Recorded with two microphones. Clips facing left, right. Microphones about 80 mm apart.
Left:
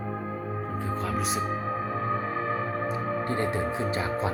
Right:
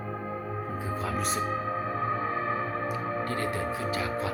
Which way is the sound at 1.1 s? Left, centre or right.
Centre.